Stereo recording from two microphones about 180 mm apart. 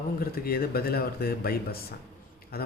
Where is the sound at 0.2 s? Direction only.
55° left (ahead or behind).